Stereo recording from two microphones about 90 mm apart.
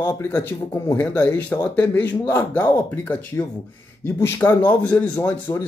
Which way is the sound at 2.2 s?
30° left (ahead or behind).